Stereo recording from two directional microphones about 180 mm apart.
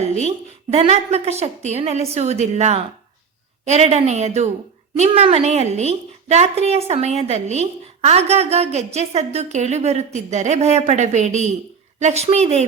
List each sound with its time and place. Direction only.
0.2 s a woman's voice: 35° right (ahead or behind)